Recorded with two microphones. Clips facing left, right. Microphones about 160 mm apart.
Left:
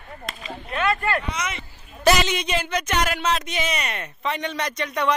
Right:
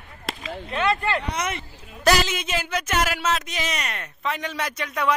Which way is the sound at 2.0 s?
Centre (ahead or behind).